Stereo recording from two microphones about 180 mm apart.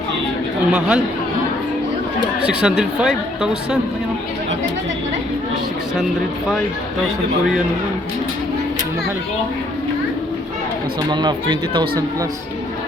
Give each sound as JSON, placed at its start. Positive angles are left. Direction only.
{"t": 0.7, "sound": "speech", "side_deg": -5}
{"t": 2.5, "sound": "speech", "side_deg": -5}
{"t": 11.1, "sound": "speech", "side_deg": -25}